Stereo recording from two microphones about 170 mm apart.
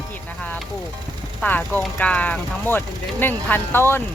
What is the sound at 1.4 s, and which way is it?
Speech, 10° left (ahead or behind).